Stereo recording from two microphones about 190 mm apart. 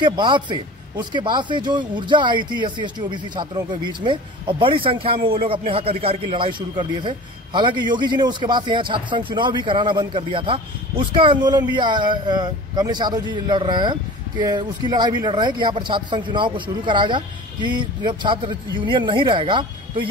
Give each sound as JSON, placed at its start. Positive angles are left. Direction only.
{"t": 0.0, "sound": "a man's voice", "side_deg": -25}